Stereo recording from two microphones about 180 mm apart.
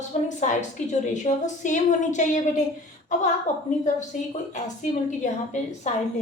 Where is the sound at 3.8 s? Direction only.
40° left (ahead or behind).